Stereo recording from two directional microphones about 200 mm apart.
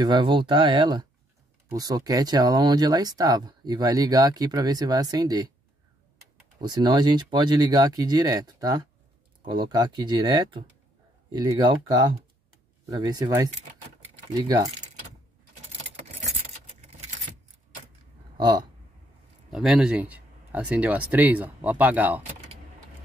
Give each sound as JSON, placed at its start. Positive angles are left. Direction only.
{"t": 0.0, "sound": "speech", "side_deg": -25}
{"t": 6.6, "sound": "speech", "side_deg": -20}
{"t": 18.4, "sound": "speech", "side_deg": -20}
{"t": 19.5, "sound": "speech", "side_deg": 0}